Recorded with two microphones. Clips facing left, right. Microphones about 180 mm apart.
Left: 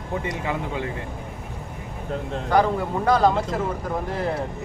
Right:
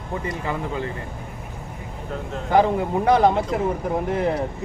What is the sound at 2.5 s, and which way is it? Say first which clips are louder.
Speech: right 2 dB; 20° right (ahead or behind).